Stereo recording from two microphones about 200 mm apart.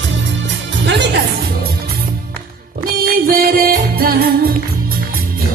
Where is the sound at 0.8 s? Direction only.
60° right (ahead or behind).